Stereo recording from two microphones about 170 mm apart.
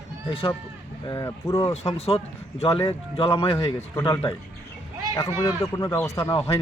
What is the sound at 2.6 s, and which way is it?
Speech, 35° left (ahead or behind).